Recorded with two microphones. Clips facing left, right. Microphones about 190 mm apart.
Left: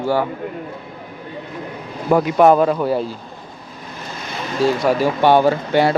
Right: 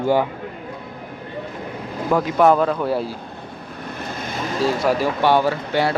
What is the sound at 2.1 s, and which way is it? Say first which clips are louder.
Speech: left 3 dB; 20° left (ahead or behind).